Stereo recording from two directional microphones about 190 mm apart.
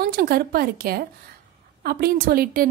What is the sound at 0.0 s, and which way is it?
A woman's voice, 55° right (ahead or behind).